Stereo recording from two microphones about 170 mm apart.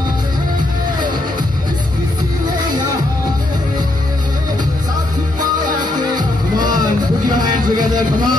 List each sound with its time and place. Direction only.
5.4 s music: 25° right (ahead or behind)